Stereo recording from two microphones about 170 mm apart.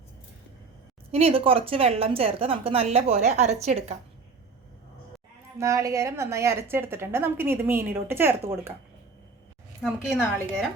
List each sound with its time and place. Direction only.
1.1 s a woman's voice: 35° right (ahead or behind)
5.5 s a woman's voice: 20° right (ahead or behind)
9.8 s a woman's voice: centre (ahead or behind)